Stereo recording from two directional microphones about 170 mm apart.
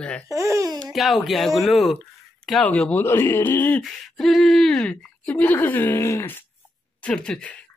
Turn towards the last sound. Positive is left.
turn(degrees=5)  # may be behind; listen again after turning